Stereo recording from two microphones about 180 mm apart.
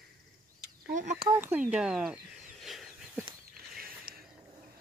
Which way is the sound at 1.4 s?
10° right (ahead or behind).